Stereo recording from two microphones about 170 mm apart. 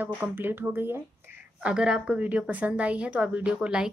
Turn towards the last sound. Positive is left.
turn(degrees=-5)  # may be behind; listen again after turning